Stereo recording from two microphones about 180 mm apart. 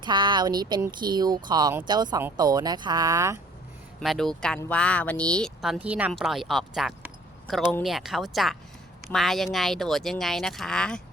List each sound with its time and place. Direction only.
0.0 s speech: 25° right (ahead or behind)
4.0 s speech: centre (ahead or behind)